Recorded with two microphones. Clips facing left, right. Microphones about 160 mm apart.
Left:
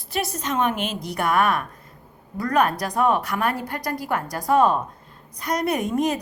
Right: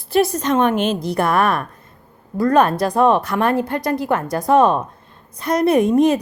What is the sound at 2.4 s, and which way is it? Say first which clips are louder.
A woman's voice: right 6 dB; 30° right (ahead or behind).